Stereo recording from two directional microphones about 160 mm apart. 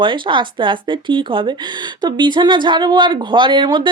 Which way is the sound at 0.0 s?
30° right (ahead or behind).